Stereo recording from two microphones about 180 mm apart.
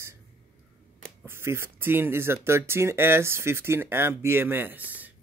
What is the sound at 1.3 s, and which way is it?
Speech, 15° right (ahead or behind).